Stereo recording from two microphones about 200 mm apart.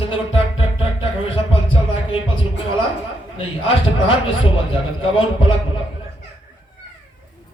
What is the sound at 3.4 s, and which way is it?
Speech, 25° left (ahead or behind).